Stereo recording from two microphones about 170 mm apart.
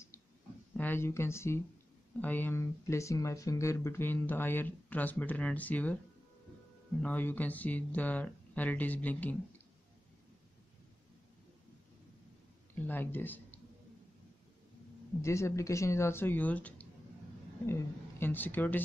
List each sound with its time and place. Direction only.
0.7 s speech: 15° left (ahead or behind)
7.0 s speech: 10° left (ahead or behind)
12.7 s speech: 10° left (ahead or behind)
15.2 s speech: 15° left (ahead or behind)
18.2 s speech: 10° left (ahead or behind)